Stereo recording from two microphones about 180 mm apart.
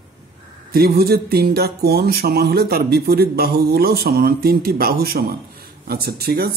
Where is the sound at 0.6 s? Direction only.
60° right (ahead or behind).